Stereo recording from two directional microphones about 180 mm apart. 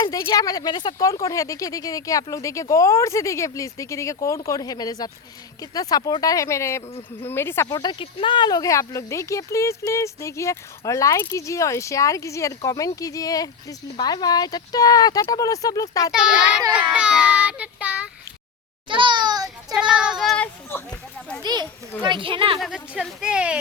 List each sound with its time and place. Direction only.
0.0 s speech: 20° left (ahead or behind)
16.1 s speech: 5° right (ahead or behind)
18.9 s a child's voice: 25° right (ahead or behind)
19.7 s speech: 5° right (ahead or behind)
21.4 s a child's voice: 25° right (ahead or behind)
22.5 s speech: centre (ahead or behind)